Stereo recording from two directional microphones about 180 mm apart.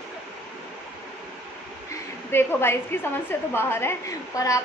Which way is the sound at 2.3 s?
15° left (ahead or behind).